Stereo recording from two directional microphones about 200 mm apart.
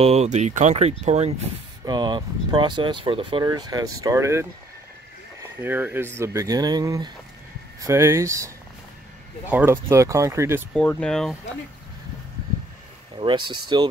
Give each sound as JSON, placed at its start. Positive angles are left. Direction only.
{"t": 0.0, "sound": "speech", "side_deg": -35}
{"t": 1.9, "sound": "speech", "side_deg": -20}
{"t": 5.6, "sound": "speech", "side_deg": -10}
{"t": 9.5, "sound": "speech", "side_deg": -10}
{"t": 10.7, "sound": "speech", "side_deg": 5}
{"t": 13.2, "sound": "speech", "side_deg": -25}